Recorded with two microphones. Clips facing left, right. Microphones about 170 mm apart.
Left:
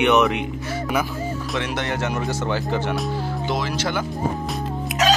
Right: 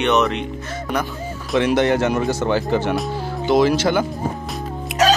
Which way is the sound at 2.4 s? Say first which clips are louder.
Right 5 dB; 75° right (ahead or behind).